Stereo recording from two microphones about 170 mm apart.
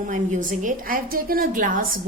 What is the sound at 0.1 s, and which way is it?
A woman's voice, 50° right (ahead or behind).